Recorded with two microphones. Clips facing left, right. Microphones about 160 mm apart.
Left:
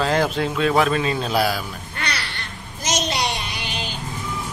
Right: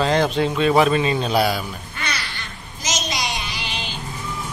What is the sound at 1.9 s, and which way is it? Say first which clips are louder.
Quack: left 1 dB; 65° left (ahead or behind).